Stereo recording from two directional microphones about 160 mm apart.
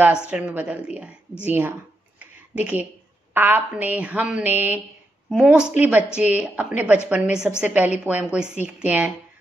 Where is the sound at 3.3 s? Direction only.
10° right (ahead or behind).